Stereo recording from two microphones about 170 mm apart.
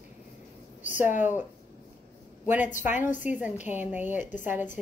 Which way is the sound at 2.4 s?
10° right (ahead or behind).